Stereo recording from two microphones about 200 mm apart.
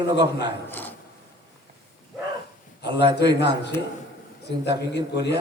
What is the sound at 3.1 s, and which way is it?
A man's voice, 55° left (ahead or behind).